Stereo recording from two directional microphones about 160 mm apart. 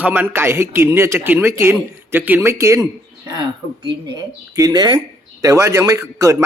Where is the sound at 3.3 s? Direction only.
30° right (ahead or behind).